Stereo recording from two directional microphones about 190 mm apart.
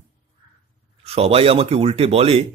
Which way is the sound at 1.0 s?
30° right (ahead or behind).